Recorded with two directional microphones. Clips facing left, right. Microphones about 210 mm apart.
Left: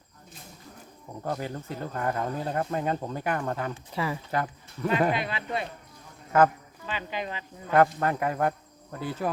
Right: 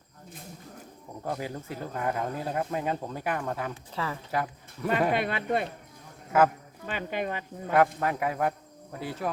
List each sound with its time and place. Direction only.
1.2 s speech: 10° right (ahead or behind)
3.9 s speech: 10° left (ahead or behind)
4.3 s speech: 5° right (ahead or behind)
5.1 s speech: 55° right (ahead or behind)
6.3 s speech: 5° right (ahead or behind)
6.8 s speech: 55° right (ahead or behind)
7.9 s speech: centre (ahead or behind)